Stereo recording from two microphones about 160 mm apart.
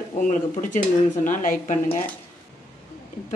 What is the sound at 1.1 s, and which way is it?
Speech, 50° left (ahead or behind).